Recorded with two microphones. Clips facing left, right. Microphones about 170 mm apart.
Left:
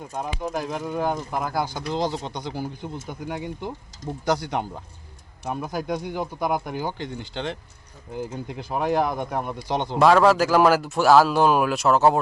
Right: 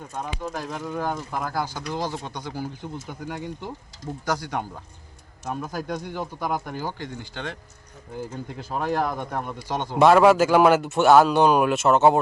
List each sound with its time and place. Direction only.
0.1 s speech: 15° left (ahead or behind)
10.0 s a man's voice: centre (ahead or behind)